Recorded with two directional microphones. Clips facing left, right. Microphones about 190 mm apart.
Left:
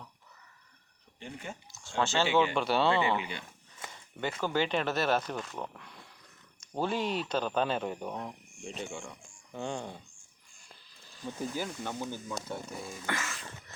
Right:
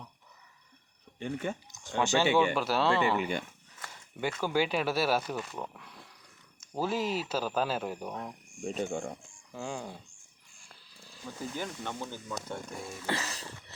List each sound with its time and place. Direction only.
1.2 s speech: 60° right (ahead or behind)
1.7 s speech: 15° right (ahead or behind); by 3.2 s centre (ahead or behind)
4.4 s speech: 10° right (ahead or behind)
8.6 s speech: 45° right (ahead or behind)
9.5 s speech: 5° right (ahead or behind)
11.5 s speech: 5° left (ahead or behind)
13.1 s a sound: 35° right (ahead or behind)